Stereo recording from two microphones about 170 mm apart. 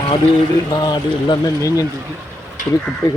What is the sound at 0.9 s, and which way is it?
Speech, 20° left (ahead or behind).